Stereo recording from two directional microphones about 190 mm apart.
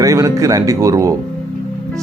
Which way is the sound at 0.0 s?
15° right (ahead or behind).